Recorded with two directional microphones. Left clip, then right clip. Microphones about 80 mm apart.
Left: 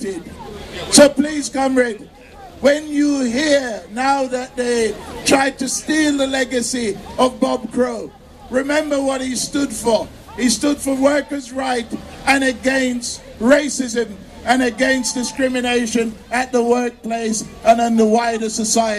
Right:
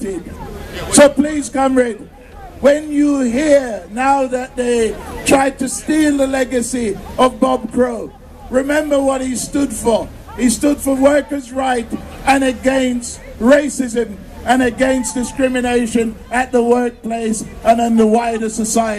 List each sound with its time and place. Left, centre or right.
0.8 s a man's voice: centre